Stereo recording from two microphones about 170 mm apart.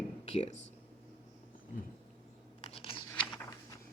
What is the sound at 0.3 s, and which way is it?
Speech, 40° left (ahead or behind).